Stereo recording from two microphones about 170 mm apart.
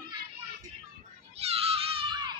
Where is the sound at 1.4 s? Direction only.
35° right (ahead or behind).